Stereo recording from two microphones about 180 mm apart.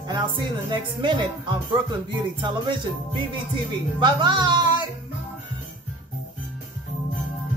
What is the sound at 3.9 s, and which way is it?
Speech, 25° right (ahead or behind).